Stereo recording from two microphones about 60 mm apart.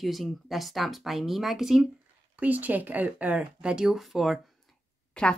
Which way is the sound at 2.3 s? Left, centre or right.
Right.